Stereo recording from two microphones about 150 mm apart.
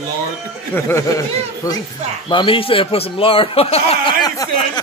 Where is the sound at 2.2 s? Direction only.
35° left (ahead or behind).